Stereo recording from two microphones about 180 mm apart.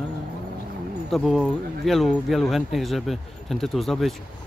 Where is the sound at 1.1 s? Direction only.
Centre (ahead or behind).